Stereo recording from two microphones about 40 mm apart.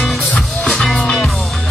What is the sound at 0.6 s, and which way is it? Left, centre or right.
Music, centre.